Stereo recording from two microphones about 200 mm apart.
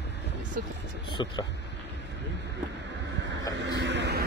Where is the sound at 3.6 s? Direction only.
65° right (ahead or behind).